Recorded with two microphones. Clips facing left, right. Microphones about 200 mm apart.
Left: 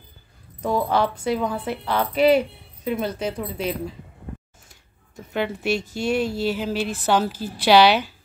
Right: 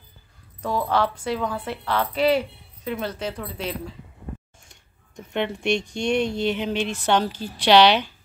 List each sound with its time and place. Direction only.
0.6 s speech: 15° left (ahead or behind)
4.6 s speech: 5° left (ahead or behind)